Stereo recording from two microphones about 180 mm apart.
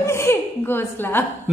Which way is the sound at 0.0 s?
15° left (ahead or behind).